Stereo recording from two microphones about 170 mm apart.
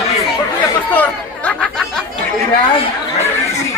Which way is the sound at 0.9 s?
10° left (ahead or behind).